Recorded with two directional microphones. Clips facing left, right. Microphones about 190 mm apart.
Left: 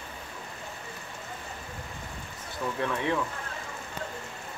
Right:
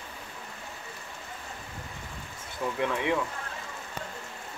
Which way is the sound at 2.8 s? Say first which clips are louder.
Right 1 dB; 15° right (ahead or behind).